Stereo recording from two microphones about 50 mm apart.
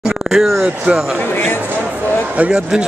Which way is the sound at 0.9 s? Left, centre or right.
Centre.